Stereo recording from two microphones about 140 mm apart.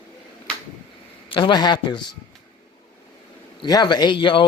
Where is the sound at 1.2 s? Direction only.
35° left (ahead or behind).